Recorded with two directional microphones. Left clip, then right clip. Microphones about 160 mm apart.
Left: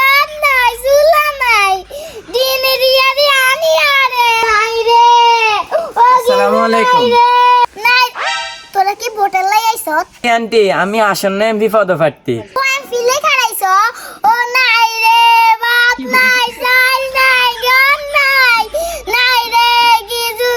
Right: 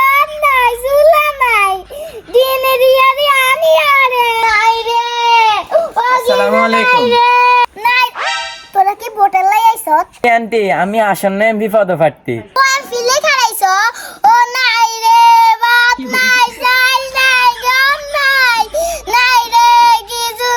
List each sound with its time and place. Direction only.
0.0 s child singing: 5° left (ahead or behind)
5.4 s baby cry: centre (ahead or behind)
6.8 s baby cry: 25° right (ahead or behind)
7.8 s music: 5° left (ahead or behind)
12.5 s a sound: 10° right (ahead or behind)